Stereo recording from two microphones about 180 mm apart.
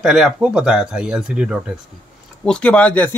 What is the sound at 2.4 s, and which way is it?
Speech, 5° left (ahead or behind).